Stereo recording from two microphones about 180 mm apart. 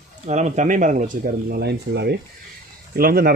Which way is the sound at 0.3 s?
40° right (ahead or behind).